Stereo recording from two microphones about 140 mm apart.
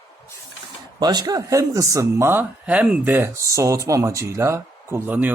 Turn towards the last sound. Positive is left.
turn(degrees=-15)  # may be behind; listen again after turning